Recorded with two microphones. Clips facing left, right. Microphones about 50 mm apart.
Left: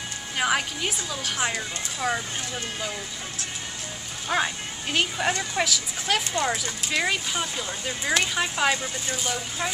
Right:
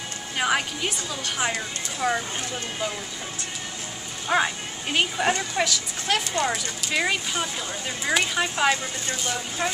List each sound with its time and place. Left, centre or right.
0.4 s speech: centre
4.3 s speech: centre